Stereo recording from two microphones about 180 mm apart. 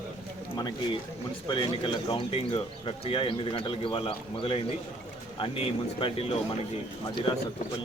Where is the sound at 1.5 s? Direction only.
25° left (ahead or behind).